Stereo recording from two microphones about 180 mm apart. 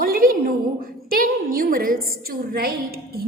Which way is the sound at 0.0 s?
55° right (ahead or behind).